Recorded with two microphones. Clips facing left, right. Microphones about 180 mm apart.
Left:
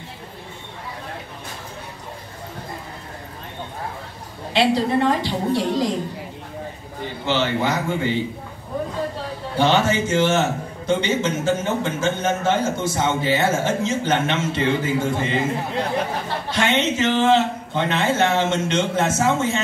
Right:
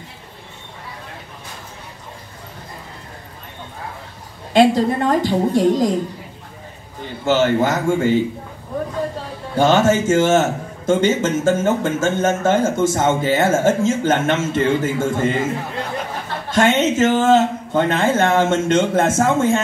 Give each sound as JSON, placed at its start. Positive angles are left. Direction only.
{"t": 4.6, "sound": "a man's voice", "side_deg": -45}
{"t": 7.2, "sound": "a man's voice", "side_deg": -45}
{"t": 9.6, "sound": "a man's voice", "side_deg": -45}
{"t": 16.4, "sound": "a man's voice", "side_deg": -45}